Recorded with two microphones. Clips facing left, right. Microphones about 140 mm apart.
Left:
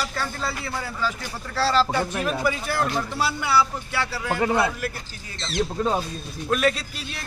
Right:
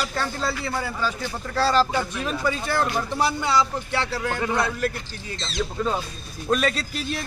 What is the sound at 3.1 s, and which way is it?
Speech, 20° right (ahead or behind).